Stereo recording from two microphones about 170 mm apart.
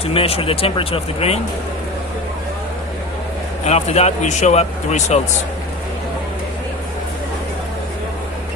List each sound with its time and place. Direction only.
0.0 s a man's voice: 35° left (ahead or behind)
3.7 s a man's voice: 40° left (ahead or behind)